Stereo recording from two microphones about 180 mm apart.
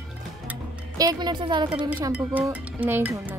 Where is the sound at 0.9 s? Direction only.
20° right (ahead or behind).